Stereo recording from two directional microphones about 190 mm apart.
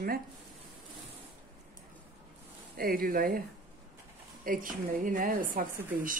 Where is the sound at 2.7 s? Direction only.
50° right (ahead or behind).